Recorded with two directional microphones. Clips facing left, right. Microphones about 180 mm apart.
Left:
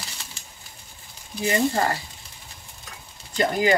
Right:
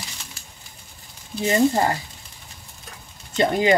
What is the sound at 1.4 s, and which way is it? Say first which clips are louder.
Speech: right 3 dB; 20° right (ahead or behind).